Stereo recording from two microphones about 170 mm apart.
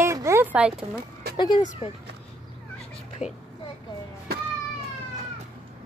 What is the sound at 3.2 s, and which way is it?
Speech, 5° right (ahead or behind).